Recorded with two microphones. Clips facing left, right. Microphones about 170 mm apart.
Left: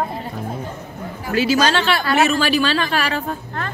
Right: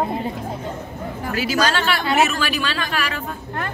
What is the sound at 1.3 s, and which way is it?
A woman's voice, 25° left (ahead or behind).